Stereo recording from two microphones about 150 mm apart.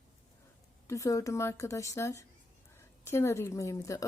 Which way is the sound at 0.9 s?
20° left (ahead or behind).